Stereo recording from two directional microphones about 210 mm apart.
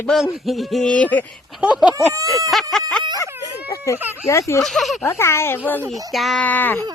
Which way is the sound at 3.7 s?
15° left (ahead or behind).